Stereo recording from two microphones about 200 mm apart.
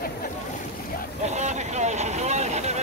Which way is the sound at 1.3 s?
35° right (ahead or behind).